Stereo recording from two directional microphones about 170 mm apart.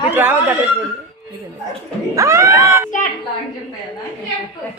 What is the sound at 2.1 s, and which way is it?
Speech, 20° right (ahead or behind).